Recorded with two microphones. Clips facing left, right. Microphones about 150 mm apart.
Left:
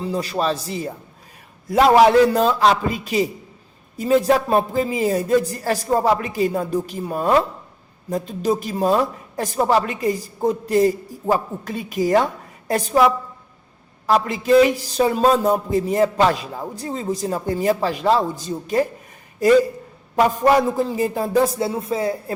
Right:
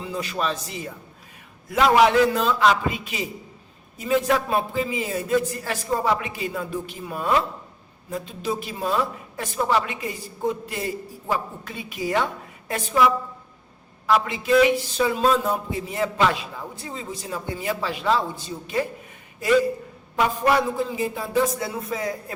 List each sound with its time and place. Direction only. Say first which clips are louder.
0.0 s a woman's voice: left 5 dB; 35° left (ahead or behind)
14.1 s a woman's voice: left 4 dB; 40° left (ahead or behind)
20.1 s a woman's voice: left 5 dB; 40° left (ahead or behind)